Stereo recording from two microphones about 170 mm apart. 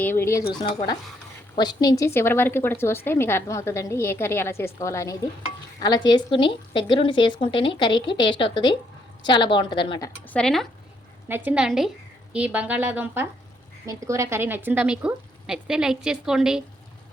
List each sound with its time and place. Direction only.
0.0 s a woman's voice: 15° left (ahead or behind)
10.2 s speech: 5° left (ahead or behind)
11.3 s a woman's voice: 10° right (ahead or behind)